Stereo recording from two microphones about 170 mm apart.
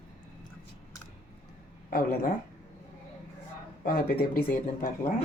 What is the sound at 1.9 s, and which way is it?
Speech, 60° left (ahead or behind).